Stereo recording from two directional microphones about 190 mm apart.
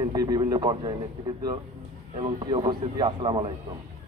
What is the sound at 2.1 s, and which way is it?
Speech, 25° right (ahead or behind).